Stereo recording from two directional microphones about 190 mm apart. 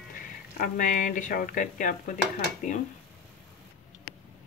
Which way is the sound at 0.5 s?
45° left (ahead or behind).